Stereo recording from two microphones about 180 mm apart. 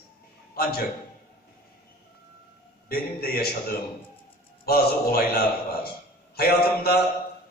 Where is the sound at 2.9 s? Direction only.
55° left (ahead or behind).